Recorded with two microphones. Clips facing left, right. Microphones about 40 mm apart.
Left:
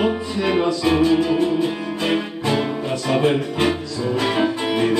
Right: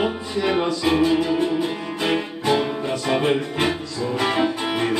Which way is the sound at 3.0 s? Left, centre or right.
Centre.